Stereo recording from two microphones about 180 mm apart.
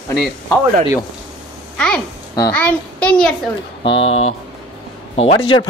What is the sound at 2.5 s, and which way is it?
Speech, 10° left (ahead or behind).